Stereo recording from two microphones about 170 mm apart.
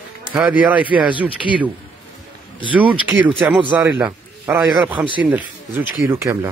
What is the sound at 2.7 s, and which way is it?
A man's voice, 10° right (ahead or behind).